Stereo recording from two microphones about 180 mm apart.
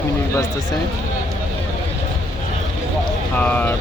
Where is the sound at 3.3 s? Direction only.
10° left (ahead or behind).